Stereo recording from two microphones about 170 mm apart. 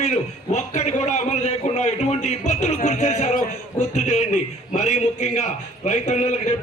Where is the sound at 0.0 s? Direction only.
45° left (ahead or behind).